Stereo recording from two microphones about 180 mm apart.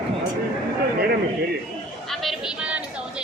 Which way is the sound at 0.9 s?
60° right (ahead or behind).